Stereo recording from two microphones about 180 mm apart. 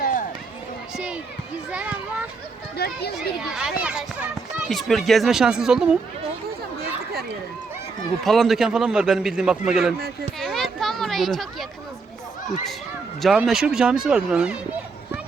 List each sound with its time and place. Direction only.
0.0 s run: 50° left (ahead or behind)
1.7 s children playing: 5° right (ahead or behind)
2.7 s a child's voice: 60° left (ahead or behind)
3.2 s speech: 5° right (ahead or behind)
8.2 s speech: centre (ahead or behind)
10.4 s children playing: centre (ahead or behind)
13.2 s speech: 5° right (ahead or behind)